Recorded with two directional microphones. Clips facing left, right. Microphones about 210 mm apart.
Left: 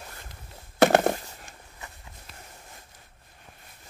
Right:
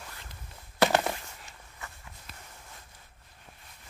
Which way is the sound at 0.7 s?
50° left (ahead or behind).